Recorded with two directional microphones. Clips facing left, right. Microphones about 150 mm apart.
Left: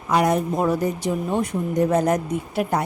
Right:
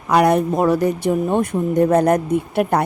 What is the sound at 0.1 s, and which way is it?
Speech, 65° right (ahead or behind).